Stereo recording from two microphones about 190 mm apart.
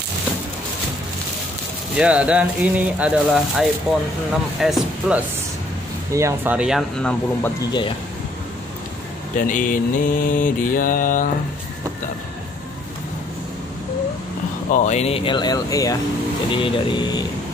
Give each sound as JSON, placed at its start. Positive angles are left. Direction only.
{"t": 2.0, "sound": "speech", "side_deg": -5}
{"t": 9.5, "sound": "mantra", "side_deg": 45}
{"t": 14.7, "sound": "speech", "side_deg": 40}